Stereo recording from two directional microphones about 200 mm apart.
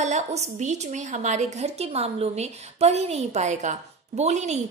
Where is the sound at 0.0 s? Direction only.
35° right (ahead or behind).